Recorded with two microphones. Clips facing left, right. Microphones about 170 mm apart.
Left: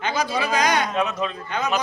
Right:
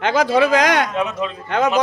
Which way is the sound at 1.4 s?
90° right.